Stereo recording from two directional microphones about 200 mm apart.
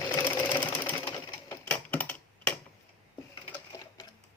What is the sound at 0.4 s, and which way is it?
Sewing machine, 10° left (ahead or behind).